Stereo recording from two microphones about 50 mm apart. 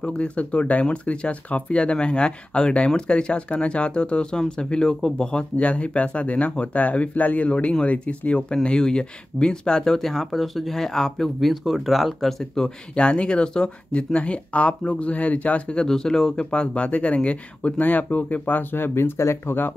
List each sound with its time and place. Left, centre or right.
0.0 s speech: left; by 12.6 s centre
12.6 s speech: left
15.8 s speech: centre; by 18.9 s left
18.9 s speech: left